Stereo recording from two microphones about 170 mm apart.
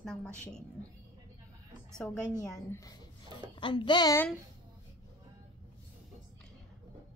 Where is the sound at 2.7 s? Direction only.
20° left (ahead or behind).